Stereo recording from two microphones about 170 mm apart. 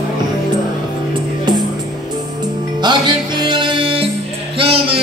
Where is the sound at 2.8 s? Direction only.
25° right (ahead or behind).